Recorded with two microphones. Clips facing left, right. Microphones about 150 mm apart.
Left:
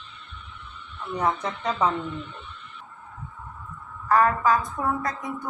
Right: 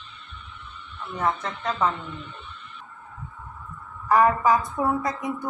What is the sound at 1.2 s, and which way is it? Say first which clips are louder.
Speech: even; 10° left (ahead or behind).